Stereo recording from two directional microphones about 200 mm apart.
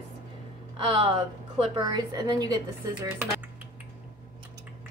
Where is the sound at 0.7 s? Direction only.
25° right (ahead or behind).